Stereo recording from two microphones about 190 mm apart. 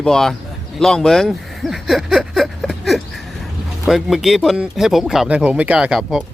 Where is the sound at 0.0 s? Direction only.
Centre (ahead or behind).